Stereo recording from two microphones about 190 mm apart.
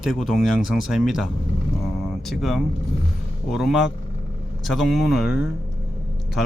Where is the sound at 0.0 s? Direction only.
Centre (ahead or behind).